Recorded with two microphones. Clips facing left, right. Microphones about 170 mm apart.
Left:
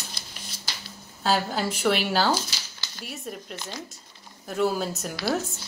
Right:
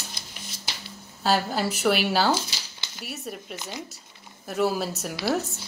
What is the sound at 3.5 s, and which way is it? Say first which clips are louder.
Speech: right 1 dB; 15° right (ahead or behind).